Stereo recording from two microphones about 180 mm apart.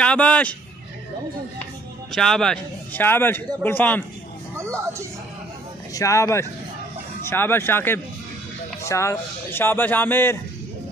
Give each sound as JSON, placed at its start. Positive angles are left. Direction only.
{"t": 0.0, "sound": "speech", "side_deg": 5}
{"t": 2.1, "sound": "speech", "side_deg": 5}
{"t": 4.6, "sound": "speech", "side_deg": -15}
{"t": 5.9, "sound": "speech", "side_deg": 15}